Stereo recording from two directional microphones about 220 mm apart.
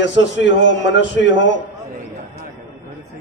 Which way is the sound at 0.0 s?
55° left (ahead or behind).